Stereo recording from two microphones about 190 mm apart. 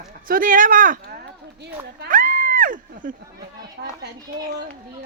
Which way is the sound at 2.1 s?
45° right (ahead or behind).